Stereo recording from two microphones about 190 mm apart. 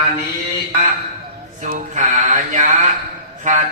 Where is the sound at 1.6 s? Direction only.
40° right (ahead or behind).